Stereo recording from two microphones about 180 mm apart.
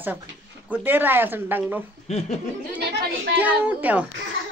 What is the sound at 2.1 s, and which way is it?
Laughter, 35° left (ahead or behind).